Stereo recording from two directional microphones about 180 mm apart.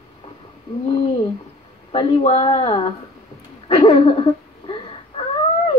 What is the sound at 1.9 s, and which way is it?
Speech, 35° left (ahead or behind).